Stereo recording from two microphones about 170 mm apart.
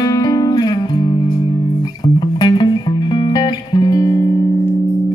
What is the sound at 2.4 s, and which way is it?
Music, 25° left (ahead or behind).